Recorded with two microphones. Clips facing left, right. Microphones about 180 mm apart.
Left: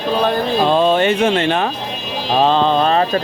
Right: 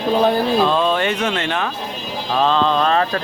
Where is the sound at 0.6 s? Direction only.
25° left (ahead or behind).